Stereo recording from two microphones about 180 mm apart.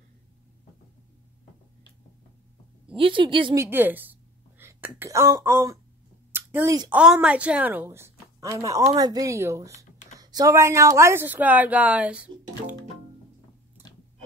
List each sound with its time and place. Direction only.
3.0 s a woman's voice: 30° right (ahead or behind)
3.5 s speech: 10° right (ahead or behind)
6.9 s a woman's voice: 5° right (ahead or behind)